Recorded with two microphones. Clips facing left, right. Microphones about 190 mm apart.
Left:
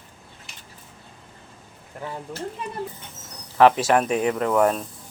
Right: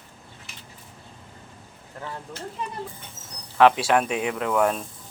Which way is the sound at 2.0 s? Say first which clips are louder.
Left 3 dB; 10° left (ahead or behind).